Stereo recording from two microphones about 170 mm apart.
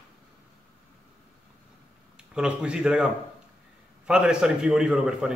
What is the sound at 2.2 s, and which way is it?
A man's voice, 5° right (ahead or behind).